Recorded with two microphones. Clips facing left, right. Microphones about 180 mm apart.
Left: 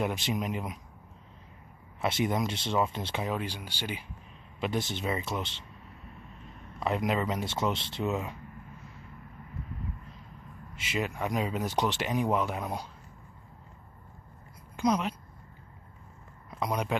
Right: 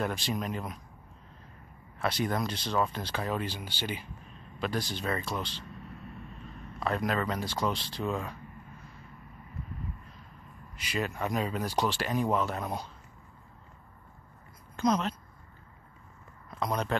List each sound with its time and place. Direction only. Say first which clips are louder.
0.0 s speech: left 1 dB; 20° left (ahead or behind)
2.0 s speech: left 2 dB; 20° left (ahead or behind)
3.3 s speech: even; 10° left (ahead or behind)
4.6 s speech: left 1 dB; 25° left (ahead or behind)
6.8 s speech: left 1 dB; 20° left (ahead or behind)
10.8 s speech: even; 20° left (ahead or behind)
14.8 s speech: even; 10° left (ahead or behind)
16.4 s speech: even; 10° left (ahead or behind)